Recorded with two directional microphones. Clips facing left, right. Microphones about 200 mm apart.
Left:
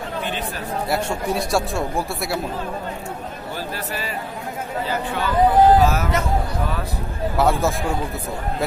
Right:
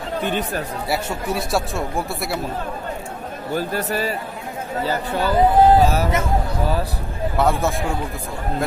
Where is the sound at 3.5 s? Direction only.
45° right (ahead or behind); by 6.3 s 25° right (ahead or behind).